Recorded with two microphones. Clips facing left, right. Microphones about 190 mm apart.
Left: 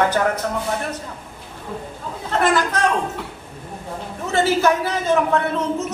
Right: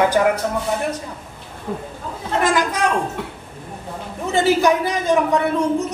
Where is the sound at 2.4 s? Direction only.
10° right (ahead or behind).